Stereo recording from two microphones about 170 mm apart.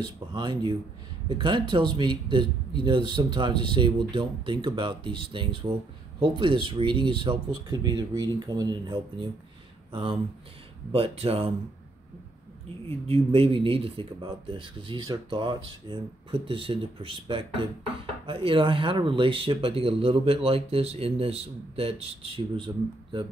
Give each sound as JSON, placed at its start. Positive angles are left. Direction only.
{"t": 0.0, "sound": "speech", "side_deg": -25}
{"t": 10.9, "sound": "speech", "side_deg": -35}
{"t": 12.8, "sound": "speech", "side_deg": -35}